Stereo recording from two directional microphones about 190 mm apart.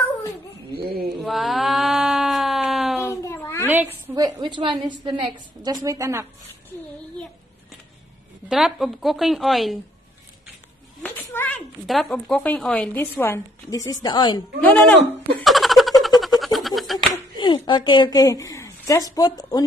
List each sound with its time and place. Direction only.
1.2 s a sound: centre (ahead or behind)
3.0 s a sound: 15° left (ahead or behind)
3.6 s a woman's voice: 10° right (ahead or behind)
8.5 s a woman's voice: 5° right (ahead or behind)
11.0 s speech: 10° left (ahead or behind); by 14.4 s 25° left (ahead or behind)
14.6 s giggle: 10° left (ahead or behind)
17.1 s speech: 25° left (ahead or behind)